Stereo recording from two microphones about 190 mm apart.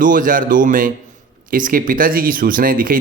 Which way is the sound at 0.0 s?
45° right (ahead or behind).